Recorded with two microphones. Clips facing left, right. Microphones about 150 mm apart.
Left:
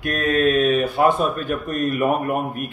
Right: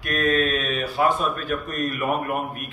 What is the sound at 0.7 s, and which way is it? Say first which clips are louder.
Speech: left 5 dB; 55° left (ahead or behind).